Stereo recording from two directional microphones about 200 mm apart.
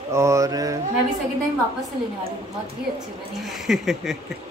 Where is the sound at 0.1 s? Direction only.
15° right (ahead or behind).